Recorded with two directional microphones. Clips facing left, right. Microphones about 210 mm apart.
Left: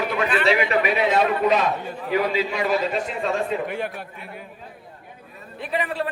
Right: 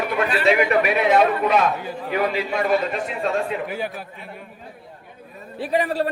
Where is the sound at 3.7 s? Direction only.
Centre (ahead or behind).